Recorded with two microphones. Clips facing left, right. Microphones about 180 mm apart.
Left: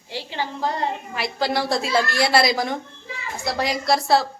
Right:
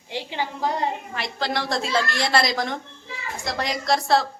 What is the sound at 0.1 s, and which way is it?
Speech, 15° right (ahead or behind).